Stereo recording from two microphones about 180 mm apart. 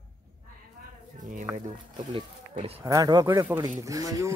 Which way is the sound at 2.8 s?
20° right (ahead or behind).